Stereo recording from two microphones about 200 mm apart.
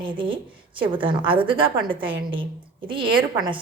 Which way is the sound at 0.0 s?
25° right (ahead or behind).